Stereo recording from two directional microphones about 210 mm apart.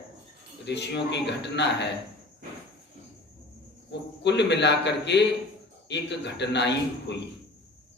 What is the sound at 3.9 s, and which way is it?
A man's voice, 55° left (ahead or behind).